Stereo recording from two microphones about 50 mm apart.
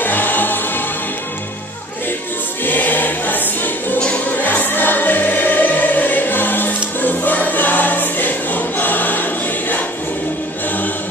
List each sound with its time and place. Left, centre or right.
0.0 s music: left
2.6 s choir: left